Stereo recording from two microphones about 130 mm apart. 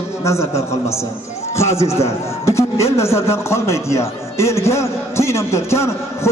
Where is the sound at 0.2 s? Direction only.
20° left (ahead or behind).